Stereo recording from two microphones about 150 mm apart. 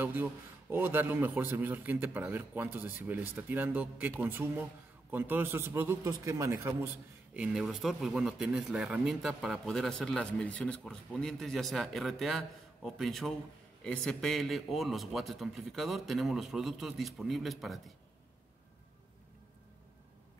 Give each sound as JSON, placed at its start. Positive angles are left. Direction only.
{"t": 0.0, "sound": "a man's voice", "side_deg": -15}
{"t": 7.3, "sound": "speech", "side_deg": -5}